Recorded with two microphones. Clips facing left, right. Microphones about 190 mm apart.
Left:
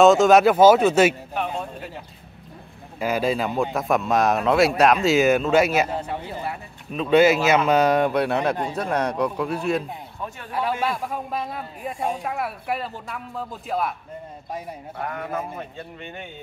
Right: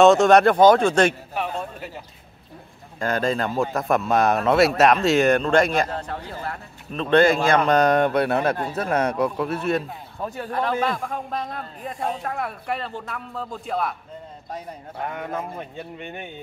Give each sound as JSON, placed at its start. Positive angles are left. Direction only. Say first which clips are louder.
{"t": 0.0, "sound": "speech", "louder": "even", "side_deg": 0}
{"t": 3.0, "sound": "speech", "louder": "even", "side_deg": 5}
{"t": 10.2, "sound": "speech", "louder": "right 6 dB", "side_deg": -35}
{"t": 10.5, "sound": "a man's voice", "louder": "right 1 dB", "side_deg": 10}